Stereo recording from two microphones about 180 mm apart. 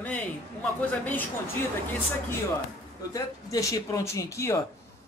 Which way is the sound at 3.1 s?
20° left (ahead or behind).